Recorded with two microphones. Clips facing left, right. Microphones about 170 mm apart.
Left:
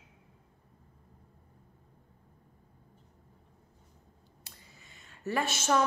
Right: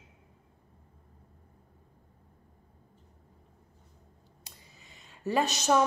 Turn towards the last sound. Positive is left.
turn(degrees=-15)  # may be behind; listen again after turning